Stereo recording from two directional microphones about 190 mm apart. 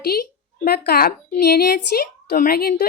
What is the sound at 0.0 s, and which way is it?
A woman's voice, 55° left (ahead or behind).